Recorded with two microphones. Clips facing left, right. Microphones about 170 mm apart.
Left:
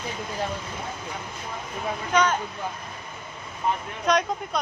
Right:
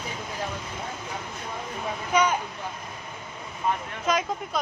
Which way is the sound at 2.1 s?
10° right (ahead or behind).